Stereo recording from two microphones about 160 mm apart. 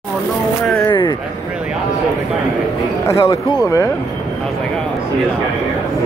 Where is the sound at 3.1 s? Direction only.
20° left (ahead or behind).